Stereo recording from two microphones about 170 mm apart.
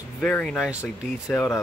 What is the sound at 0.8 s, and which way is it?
Speech, 10° left (ahead or behind).